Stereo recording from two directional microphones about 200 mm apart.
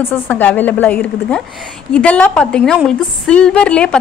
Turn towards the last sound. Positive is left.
turn(degrees=5)  # may be behind; listen again after turning